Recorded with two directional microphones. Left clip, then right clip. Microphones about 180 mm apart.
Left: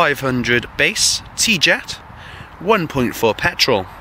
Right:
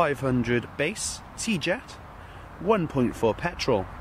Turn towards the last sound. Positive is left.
turn(degrees=5)  # may be behind; listen again after turning